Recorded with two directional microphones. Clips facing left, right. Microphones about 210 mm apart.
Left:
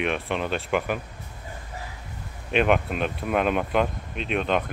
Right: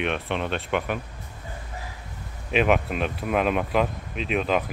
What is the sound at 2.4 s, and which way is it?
Speech, centre (ahead or behind).